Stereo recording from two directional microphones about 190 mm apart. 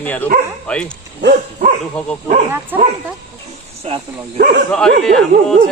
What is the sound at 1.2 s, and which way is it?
Bow-wow, 65° right (ahead or behind).